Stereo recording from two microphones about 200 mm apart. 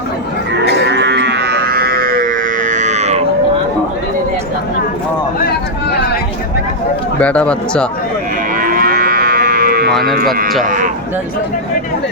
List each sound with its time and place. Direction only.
0.9 s cattle: 60° right (ahead or behind); by 3.2 s 35° right (ahead or behind)
7.2 s a man's voice: 5° left (ahead or behind)
8.5 s moo: 45° right (ahead or behind)